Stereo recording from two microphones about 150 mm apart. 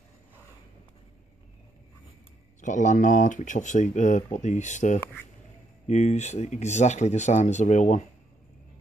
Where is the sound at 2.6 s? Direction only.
55° left (ahead or behind).